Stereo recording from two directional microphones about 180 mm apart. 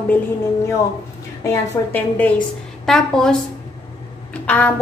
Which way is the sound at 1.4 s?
15° left (ahead or behind).